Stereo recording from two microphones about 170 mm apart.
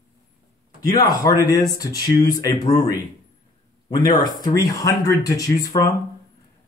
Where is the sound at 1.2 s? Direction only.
20° left (ahead or behind).